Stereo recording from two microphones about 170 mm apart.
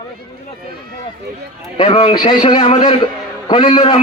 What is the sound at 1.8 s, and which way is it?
A man's voice, 35° left (ahead or behind).